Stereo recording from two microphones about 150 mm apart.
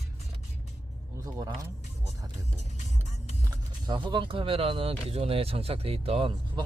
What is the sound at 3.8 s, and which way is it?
Speech, 30° right (ahead or behind).